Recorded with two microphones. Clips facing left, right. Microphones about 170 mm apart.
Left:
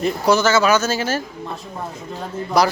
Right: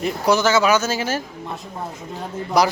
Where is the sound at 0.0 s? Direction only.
15° right (ahead or behind).